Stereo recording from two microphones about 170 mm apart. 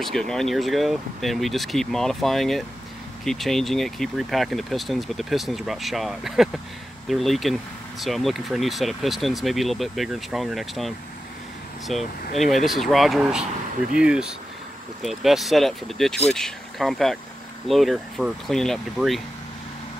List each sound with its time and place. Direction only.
0.0 s speech: 5° left (ahead or behind)